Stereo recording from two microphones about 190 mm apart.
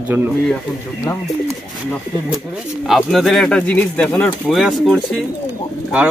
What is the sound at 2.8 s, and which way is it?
Speech, centre (ahead or behind).